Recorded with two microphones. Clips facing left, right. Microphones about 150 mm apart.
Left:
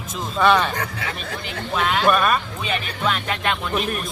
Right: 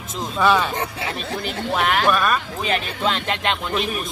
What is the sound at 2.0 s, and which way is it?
Speech, centre (ahead or behind).